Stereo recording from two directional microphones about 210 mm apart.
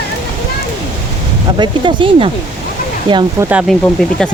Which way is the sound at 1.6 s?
20° right (ahead or behind).